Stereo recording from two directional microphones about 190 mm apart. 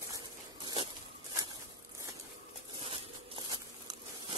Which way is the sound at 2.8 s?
25° right (ahead or behind).